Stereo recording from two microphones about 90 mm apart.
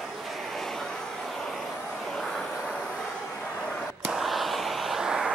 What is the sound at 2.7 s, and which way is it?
Vehicle, 10° left (ahead or behind).